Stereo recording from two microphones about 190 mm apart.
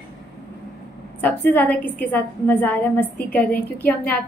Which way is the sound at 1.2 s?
10° left (ahead or behind).